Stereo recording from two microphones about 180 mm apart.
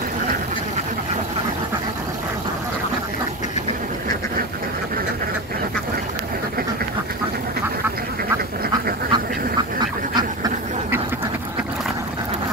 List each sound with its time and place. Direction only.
9.1 s duck: 25° right (ahead or behind)